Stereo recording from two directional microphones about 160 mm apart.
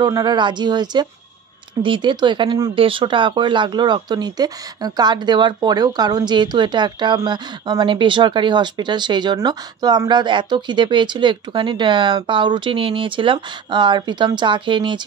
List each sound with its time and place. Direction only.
0.0 s speech: 25° right (ahead or behind)